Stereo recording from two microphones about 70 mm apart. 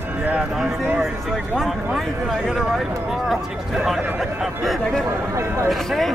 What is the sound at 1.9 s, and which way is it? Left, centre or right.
Speech, centre.